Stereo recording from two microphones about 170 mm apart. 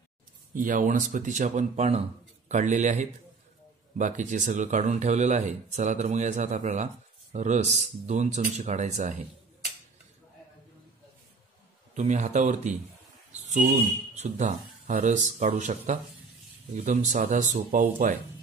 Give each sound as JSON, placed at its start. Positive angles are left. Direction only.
{"t": 0.6, "sound": "speech", "side_deg": -50}
{"t": 11.9, "sound": "speech", "side_deg": -45}
{"t": 13.7, "sound": "speech", "side_deg": -40}